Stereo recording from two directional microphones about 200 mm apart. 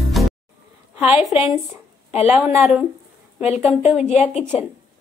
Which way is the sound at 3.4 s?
30° left (ahead or behind).